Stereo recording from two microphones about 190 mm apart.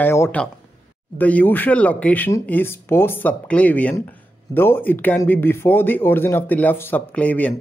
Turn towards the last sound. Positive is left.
turn(degrees=10)  # may be behind; listen again after turning